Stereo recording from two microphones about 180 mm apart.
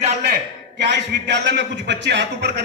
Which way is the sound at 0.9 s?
75° right (ahead or behind).